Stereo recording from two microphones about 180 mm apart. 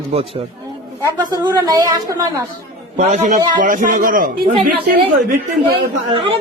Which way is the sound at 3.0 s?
40° right (ahead or behind).